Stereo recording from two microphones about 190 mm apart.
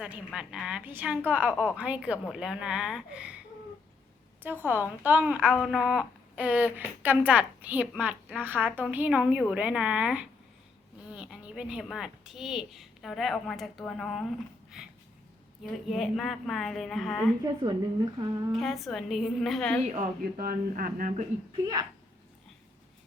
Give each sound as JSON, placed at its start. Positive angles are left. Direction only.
{"t": 0.0, "sound": "a woman's voice", "side_deg": -5}
{"t": 4.4, "sound": "a woman's voice", "side_deg": -10}
{"t": 17.4, "sound": "a woman's voice", "side_deg": -20}
{"t": 18.5, "sound": "a woman's voice", "side_deg": 0}
{"t": 20.0, "sound": "speech", "side_deg": -45}
{"t": 21.6, "sound": "a woman's voice", "side_deg": -20}